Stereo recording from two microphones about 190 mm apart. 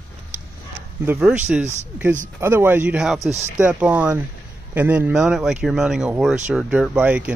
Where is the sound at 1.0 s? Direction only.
10° right (ahead or behind).